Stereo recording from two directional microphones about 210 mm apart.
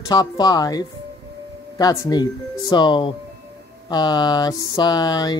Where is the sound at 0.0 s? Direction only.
20° left (ahead or behind).